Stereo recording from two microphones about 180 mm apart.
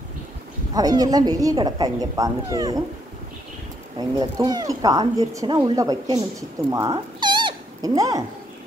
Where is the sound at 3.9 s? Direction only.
25° right (ahead or behind).